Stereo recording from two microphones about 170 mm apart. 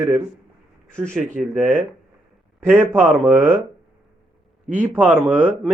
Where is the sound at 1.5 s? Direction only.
5° right (ahead or behind).